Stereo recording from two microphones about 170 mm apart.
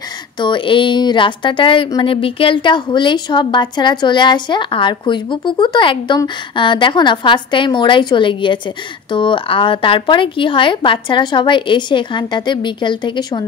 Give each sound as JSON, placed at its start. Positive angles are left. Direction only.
{"t": 0.4, "sound": "speech", "side_deg": 30}